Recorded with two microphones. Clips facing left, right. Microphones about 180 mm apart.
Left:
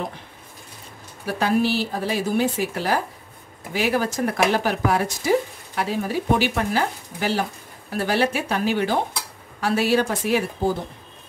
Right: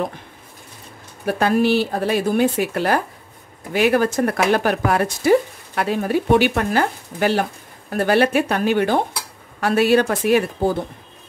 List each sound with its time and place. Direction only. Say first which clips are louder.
1.2 s speech: right 4 dB; 55° right (ahead or behind)